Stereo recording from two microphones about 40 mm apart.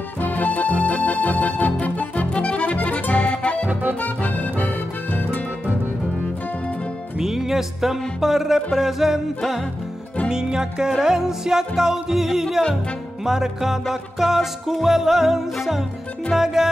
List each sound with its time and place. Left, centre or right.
0.2 s music: left
2.3 s accordion: left
4.0 s music: left
7.2 s music: centre
10.3 s music: centre